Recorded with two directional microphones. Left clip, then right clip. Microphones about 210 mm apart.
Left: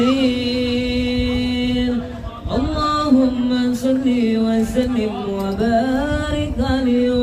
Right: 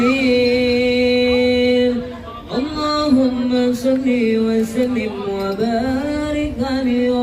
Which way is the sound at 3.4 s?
Centre (ahead or behind).